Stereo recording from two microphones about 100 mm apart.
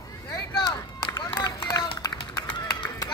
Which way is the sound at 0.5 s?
45° left (ahead or behind).